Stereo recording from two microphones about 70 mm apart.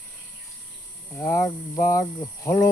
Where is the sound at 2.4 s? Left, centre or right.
Left.